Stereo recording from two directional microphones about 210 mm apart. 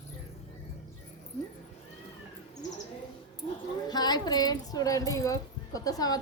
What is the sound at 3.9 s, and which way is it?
Speech, 20° left (ahead or behind).